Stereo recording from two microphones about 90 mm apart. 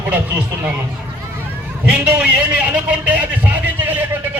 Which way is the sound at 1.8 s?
20° right (ahead or behind).